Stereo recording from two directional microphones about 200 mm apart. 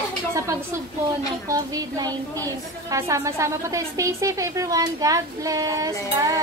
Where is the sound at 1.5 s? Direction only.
20° right (ahead or behind).